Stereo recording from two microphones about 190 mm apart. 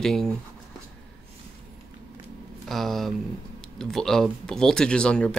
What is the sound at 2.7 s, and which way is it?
Speech, centre (ahead or behind).